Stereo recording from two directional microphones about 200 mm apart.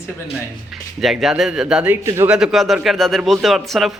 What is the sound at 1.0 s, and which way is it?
A man's voice, centre (ahead or behind).